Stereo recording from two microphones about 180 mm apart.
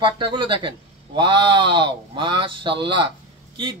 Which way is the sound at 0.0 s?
25° right (ahead or behind).